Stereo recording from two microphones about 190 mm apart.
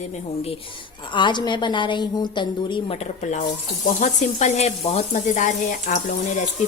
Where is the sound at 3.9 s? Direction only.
40° left (ahead or behind).